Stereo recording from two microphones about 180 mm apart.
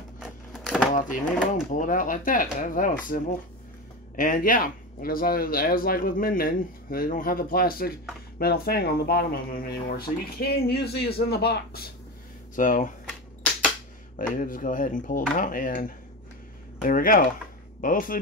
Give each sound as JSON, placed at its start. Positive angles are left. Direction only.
{"t": 0.2, "sound": "a sound", "side_deg": 0}
{"t": 0.9, "sound": "speech", "side_deg": 50}
{"t": 4.2, "sound": "speech", "side_deg": 50}
{"t": 12.5, "sound": "speech", "side_deg": 45}
{"t": 14.3, "sound": "speech", "side_deg": 50}